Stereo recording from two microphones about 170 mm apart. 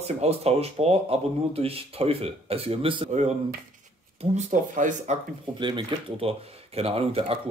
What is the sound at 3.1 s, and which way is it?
Speech, 40° right (ahead or behind).